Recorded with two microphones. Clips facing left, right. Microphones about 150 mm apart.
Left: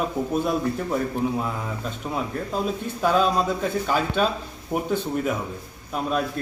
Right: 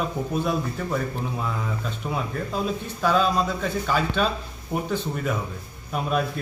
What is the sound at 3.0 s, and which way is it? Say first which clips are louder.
Speech: left 1 dB; 10° left (ahead or behind).